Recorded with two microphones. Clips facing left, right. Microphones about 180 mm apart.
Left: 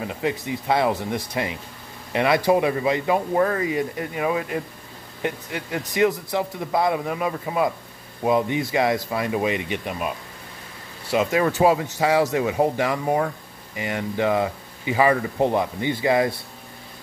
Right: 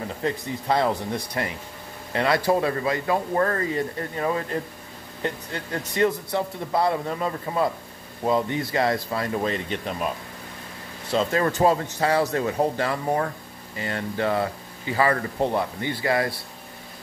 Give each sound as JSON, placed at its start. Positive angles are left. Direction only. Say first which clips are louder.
{"t": 0.0, "sound": "speech", "louder": "left 2 dB", "side_deg": 15}